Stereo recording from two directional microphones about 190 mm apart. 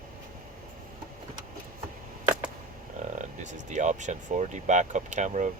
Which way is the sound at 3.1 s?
40° right (ahead or behind).